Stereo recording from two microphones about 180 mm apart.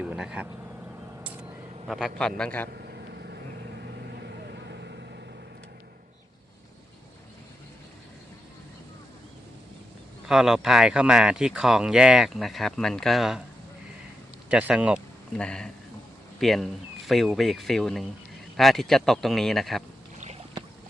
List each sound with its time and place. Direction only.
0.0 s speech: 5° right (ahead or behind)
1.2 s vehicle: 5° right (ahead or behind)
1.9 s speech: centre (ahead or behind)
2.6 s vehicle: 60° right (ahead or behind)
10.2 s speech: centre (ahead or behind)
14.5 s speech: 5° right (ahead or behind)